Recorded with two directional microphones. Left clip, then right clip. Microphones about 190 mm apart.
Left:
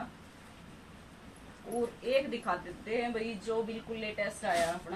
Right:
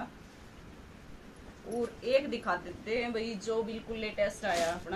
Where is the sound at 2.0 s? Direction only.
5° right (ahead or behind).